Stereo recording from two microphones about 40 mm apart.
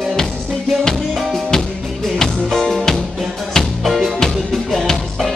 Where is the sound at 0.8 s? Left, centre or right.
Centre.